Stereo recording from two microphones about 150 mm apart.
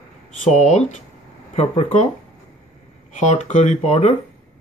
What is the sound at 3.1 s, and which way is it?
Speech, 50° left (ahead or behind).